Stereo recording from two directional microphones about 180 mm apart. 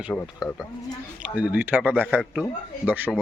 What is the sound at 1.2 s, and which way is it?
A man's voice, 10° right (ahead or behind).